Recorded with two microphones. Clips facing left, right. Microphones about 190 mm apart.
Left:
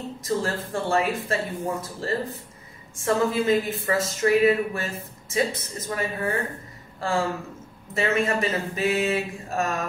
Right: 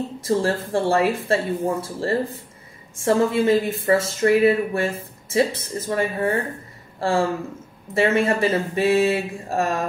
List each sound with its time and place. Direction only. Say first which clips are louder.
0.2 s speech: right 5 dB; 30° right (ahead or behind)